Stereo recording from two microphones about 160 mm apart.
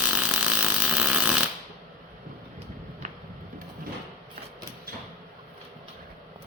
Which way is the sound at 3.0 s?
45° right (ahead or behind).